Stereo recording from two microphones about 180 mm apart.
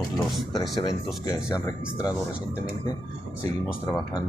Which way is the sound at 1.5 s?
20° left (ahead or behind).